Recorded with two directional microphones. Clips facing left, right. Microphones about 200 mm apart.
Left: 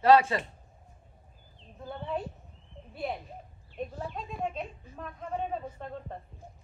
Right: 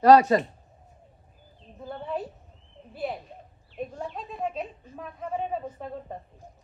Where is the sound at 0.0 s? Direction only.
40° right (ahead or behind).